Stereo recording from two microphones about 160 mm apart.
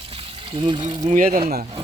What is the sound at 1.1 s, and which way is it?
Speech, 55° right (ahead or behind).